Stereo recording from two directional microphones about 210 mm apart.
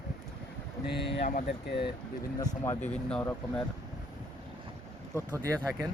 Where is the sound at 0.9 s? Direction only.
55° left (ahead or behind).